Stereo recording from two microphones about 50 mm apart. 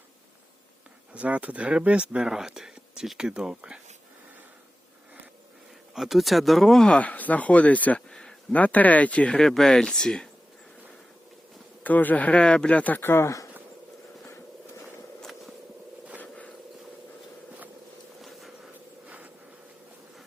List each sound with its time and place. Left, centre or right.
1.1 s speech: right
5.9 s speech: centre
7.0 s speech: left
8.1 s a sound: centre
8.5 s speech: left
9.3 s speech: centre
11.8 s speech: left
13.0 s speech: left
13.2 s speech: left
15.2 s walk: centre
16.2 s a sound: left
18.2 s a sound: centre
19.0 s a sound: right